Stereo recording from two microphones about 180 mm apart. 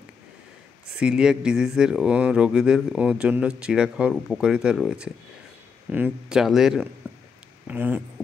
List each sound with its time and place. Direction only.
0.9 s speech: 5° right (ahead or behind)